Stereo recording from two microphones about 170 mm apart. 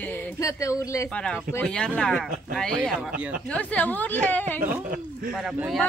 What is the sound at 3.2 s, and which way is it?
Speech, 10° right (ahead or behind).